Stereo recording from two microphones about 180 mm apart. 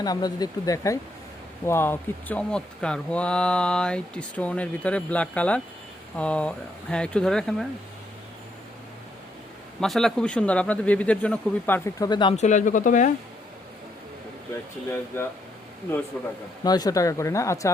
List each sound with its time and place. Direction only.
0.0 s speech: 20° left (ahead or behind); by 7.7 s 5° left (ahead or behind)
9.8 s speech: centre (ahead or behind)
12.0 s speech: 25° left (ahead or behind)
12.4 s speech: 40° left (ahead or behind)
14.8 s speech: 15° left (ahead or behind)
16.6 s speech: 20° left (ahead or behind)